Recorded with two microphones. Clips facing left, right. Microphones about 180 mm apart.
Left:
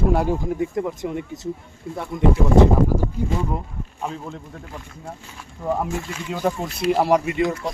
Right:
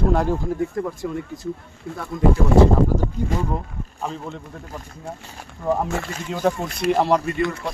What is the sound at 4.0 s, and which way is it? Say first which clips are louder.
Speech: even; 5° left (ahead or behind).